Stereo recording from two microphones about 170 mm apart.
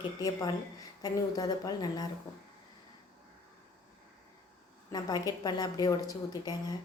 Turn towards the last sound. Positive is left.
turn(degrees=20)  # may be behind; listen again after turning